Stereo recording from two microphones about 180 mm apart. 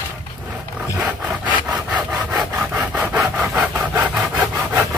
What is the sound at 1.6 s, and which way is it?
Wood, 5° right (ahead or behind).